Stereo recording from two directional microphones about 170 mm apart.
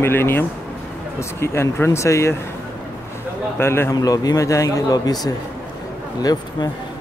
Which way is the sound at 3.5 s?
15° left (ahead or behind).